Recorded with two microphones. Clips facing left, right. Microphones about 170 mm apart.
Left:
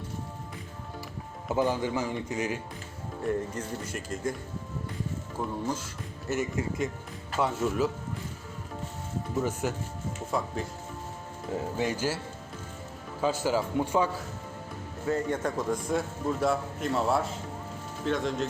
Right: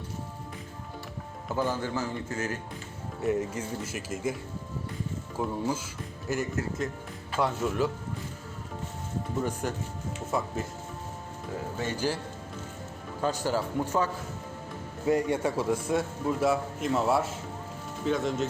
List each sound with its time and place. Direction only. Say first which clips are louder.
1.5 s a man's voice: left 2 dB; 15° left (ahead or behind)
3.2 s a man's voice: right 2 dB; 5° right (ahead or behind)
5.4 s a man's voice: right 2 dB; 5° right (ahead or behind)
9.4 s a man's voice: left 2 dB; 5° left (ahead or behind)
10.3 s a man's voice: right 1 dB; 5° right (ahead or behind)
11.5 s speech: left 4 dB; 25° left (ahead or behind)
11.9 s a man's voice: even; 5° left (ahead or behind)
13.2 s a man's voice: left 1 dB; 10° left (ahead or behind)
15.0 s a man's voice: right 3 dB; 10° right (ahead or behind)